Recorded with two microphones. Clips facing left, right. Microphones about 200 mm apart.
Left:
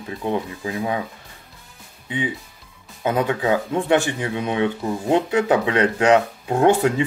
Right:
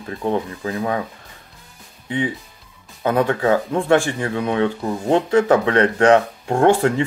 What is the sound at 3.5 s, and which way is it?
Speech, 20° left (ahead or behind).